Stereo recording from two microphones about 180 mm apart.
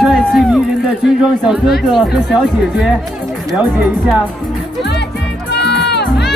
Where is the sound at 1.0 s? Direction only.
5° right (ahead or behind).